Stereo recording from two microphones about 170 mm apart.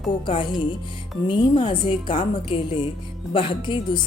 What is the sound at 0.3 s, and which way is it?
A woman's voice, 30° left (ahead or behind).